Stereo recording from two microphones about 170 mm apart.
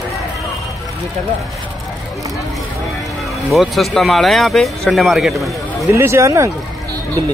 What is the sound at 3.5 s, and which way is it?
Speech, centre (ahead or behind).